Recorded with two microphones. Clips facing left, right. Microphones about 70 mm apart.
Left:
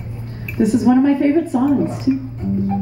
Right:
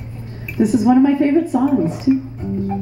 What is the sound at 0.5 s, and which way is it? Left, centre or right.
A woman's voice, centre.